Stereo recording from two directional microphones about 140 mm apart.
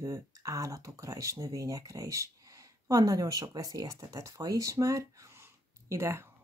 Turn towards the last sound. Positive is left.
turn(degrees=-20)  # may be behind; listen again after turning